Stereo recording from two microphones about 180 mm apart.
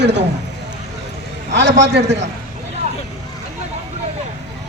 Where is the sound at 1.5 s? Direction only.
75° right (ahead or behind).